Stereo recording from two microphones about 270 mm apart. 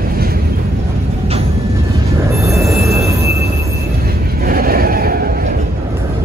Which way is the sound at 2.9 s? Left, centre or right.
Centre.